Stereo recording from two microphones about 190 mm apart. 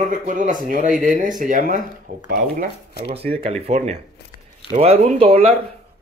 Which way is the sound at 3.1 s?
30° right (ahead or behind).